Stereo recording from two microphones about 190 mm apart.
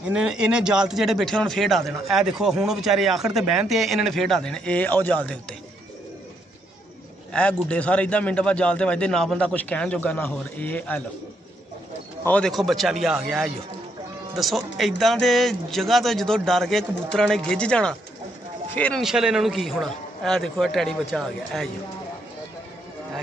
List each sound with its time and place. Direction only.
0.1 s speech: 5° right (ahead or behind)
7.3 s speech: 5° left (ahead or behind)
12.3 s speech: 5° left (ahead or behind)